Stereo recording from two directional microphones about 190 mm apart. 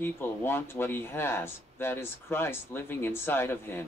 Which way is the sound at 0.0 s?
10° left (ahead or behind).